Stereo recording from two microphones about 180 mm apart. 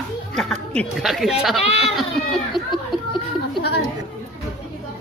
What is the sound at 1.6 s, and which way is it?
Speech, 35° left (ahead or behind).